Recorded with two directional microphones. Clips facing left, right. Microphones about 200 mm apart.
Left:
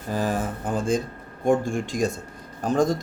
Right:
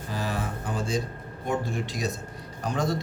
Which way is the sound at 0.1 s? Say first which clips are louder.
Left 6 dB; 45° left (ahead or behind).